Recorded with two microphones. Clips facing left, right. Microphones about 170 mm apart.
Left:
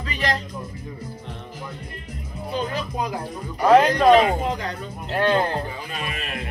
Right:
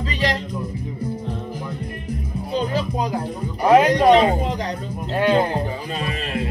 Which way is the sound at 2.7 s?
30° right (ahead or behind).